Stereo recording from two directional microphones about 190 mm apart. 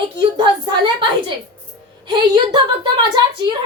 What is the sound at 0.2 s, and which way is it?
Speech, 25° right (ahead or behind).